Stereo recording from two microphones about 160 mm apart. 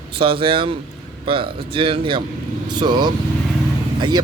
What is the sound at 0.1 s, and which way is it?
A man's voice, 35° right (ahead or behind).